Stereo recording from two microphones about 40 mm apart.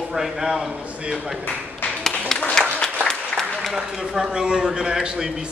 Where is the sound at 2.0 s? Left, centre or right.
Centre.